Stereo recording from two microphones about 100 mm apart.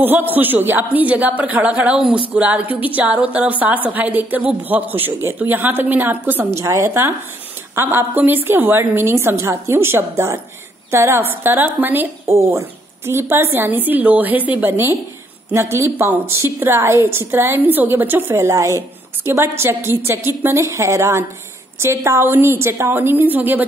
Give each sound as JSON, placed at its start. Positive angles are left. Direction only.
{"t": 0.0, "sound": "a woman's voice", "side_deg": -20}
{"t": 6.6, "sound": "a woman's voice", "side_deg": -30}